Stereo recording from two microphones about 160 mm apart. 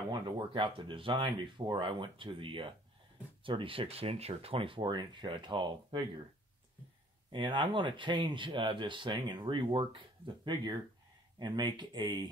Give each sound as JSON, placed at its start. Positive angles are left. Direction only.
{"t": 0.1, "sound": "speech", "side_deg": -30}
{"t": 7.3, "sound": "speech", "side_deg": -30}